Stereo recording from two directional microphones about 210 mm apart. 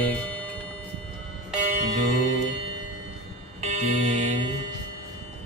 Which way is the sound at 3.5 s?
35° right (ahead or behind).